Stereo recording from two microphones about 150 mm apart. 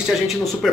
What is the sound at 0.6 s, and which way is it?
Speech, centre (ahead or behind).